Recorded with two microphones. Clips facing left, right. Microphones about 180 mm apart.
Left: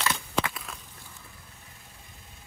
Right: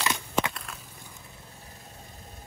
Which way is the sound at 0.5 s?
Centre (ahead or behind).